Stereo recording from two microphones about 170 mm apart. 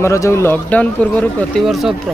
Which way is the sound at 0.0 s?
15° left (ahead or behind).